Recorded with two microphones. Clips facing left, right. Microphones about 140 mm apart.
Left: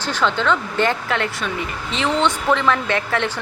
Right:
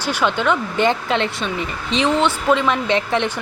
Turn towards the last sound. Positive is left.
turn(degrees=-20)  # may be behind; listen again after turning